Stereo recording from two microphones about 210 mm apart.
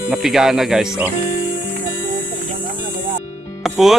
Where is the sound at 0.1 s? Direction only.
Centre (ahead or behind).